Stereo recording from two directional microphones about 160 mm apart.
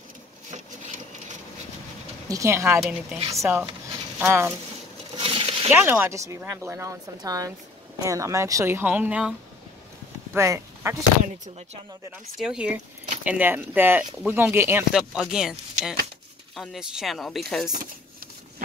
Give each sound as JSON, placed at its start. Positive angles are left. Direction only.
{"t": 2.2, "sound": "a woman's voice", "side_deg": -20}
{"t": 5.1, "sound": "a sound", "side_deg": -35}
{"t": 5.7, "sound": "a woman's voice", "side_deg": -10}
{"t": 10.3, "sound": "speech", "side_deg": -15}
{"t": 12.4, "sound": "a woman's voice", "side_deg": -5}
{"t": 15.0, "sound": "speech", "side_deg": -5}